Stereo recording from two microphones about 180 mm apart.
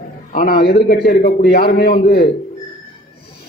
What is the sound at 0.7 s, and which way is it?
A man's voice, 60° left (ahead or behind).